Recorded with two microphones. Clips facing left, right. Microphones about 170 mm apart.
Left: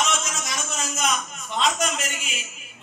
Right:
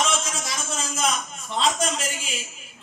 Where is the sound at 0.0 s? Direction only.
30° right (ahead or behind).